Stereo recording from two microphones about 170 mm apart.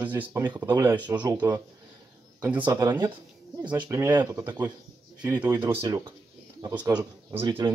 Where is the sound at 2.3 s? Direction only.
10° right (ahead or behind).